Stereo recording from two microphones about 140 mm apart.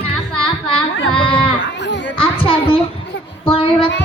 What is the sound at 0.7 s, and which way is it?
Music, 40° left (ahead or behind).